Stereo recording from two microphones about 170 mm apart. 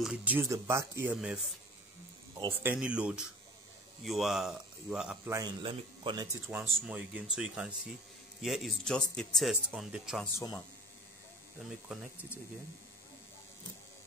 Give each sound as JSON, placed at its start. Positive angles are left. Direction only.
{"t": 0.0, "sound": "speech", "side_deg": -5}
{"t": 1.1, "sound": "speech", "side_deg": -5}
{"t": 2.4, "sound": "speech", "side_deg": -10}
{"t": 5.2, "sound": "speech", "side_deg": -20}
{"t": 5.6, "sound": "speech", "side_deg": -30}
{"t": 6.4, "sound": "speech", "side_deg": -15}
{"t": 10.3, "sound": "speech", "side_deg": 20}